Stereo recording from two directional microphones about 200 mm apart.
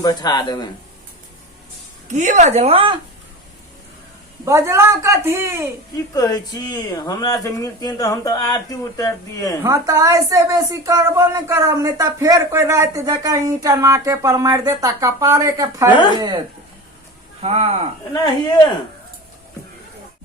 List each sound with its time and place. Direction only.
0.0 s speech: 20° left (ahead or behind)
2.0 s a woman's voice: 40° right (ahead or behind)
4.4 s a woman's voice: 15° right (ahead or behind)
6.1 s speech: 20° left (ahead or behind)
9.6 s a woman's voice: 15° right (ahead or behind)
17.4 s a woman's voice: 30° right (ahead or behind)
18.1 s speech: 20° left (ahead or behind)